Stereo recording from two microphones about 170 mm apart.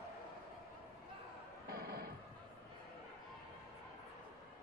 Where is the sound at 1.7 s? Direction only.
65° right (ahead or behind).